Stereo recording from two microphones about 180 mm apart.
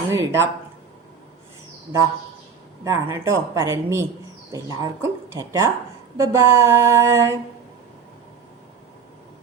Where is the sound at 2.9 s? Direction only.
15° right (ahead or behind).